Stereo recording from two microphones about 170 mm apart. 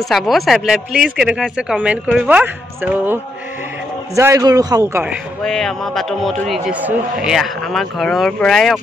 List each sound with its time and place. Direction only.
0.1 s a man's voice: centre (ahead or behind); by 5.0 s 20° right (ahead or behind)
5.4 s a man's voice: 5° left (ahead or behind)